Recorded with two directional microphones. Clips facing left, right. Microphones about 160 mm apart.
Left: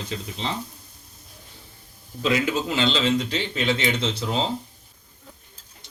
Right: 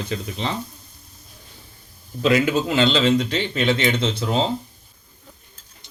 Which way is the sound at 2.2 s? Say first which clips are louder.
Right 5 dB; 60° right (ahead or behind).